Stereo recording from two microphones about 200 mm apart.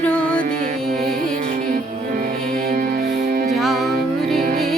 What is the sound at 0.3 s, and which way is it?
Music, 45° right (ahead or behind).